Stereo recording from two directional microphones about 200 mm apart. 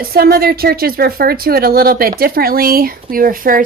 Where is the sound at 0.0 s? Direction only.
50° right (ahead or behind).